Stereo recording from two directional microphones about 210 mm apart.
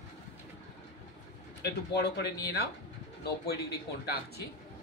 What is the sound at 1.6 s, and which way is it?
Speech, 50° left (ahead or behind).